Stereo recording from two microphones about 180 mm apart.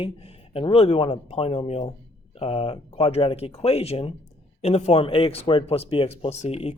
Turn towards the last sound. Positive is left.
turn(degrees=35)  # may be behind; listen again after turning